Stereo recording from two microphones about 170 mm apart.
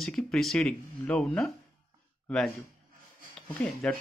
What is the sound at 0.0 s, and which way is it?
Speech, 5° left (ahead or behind).